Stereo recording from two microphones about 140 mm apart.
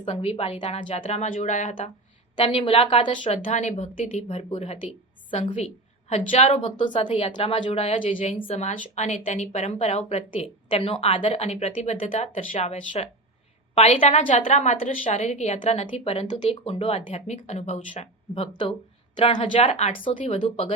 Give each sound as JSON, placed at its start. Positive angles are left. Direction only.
{"t": 0.0, "sound": "a woman's voice", "side_deg": 50}
{"t": 0.8, "sound": "a woman's voice", "side_deg": 60}
{"t": 2.3, "sound": "a woman's voice", "side_deg": 45}
{"t": 3.5, "sound": "a woman's voice", "side_deg": 55}
{"t": 6.1, "sound": "a woman's voice", "side_deg": 50}
{"t": 6.7, "sound": "a woman's voice", "side_deg": 35}
{"t": 8.4, "sound": "a woman's voice", "side_deg": 55}
{"t": 12.5, "sound": "a woman's voice", "side_deg": 50}
{"t": 14.2, "sound": "a woman's voice", "side_deg": 65}
{"t": 15.5, "sound": "a woman's voice", "side_deg": 45}
{"t": 17.2, "sound": "a woman's voice", "side_deg": 55}
{"t": 19.5, "sound": "a woman's voice", "side_deg": 50}